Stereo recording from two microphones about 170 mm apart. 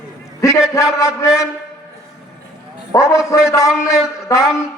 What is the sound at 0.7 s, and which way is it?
Speech, 20° left (ahead or behind).